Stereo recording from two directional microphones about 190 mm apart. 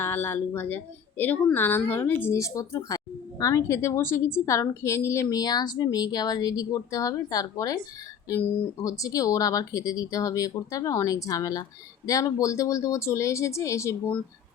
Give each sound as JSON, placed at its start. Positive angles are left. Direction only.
{"t": 0.0, "sound": "a woman's voice", "side_deg": 10}
{"t": 8.8, "sound": "a woman's voice", "side_deg": 15}